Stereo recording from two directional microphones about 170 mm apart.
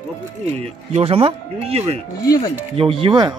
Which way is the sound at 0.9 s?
35° right (ahead or behind).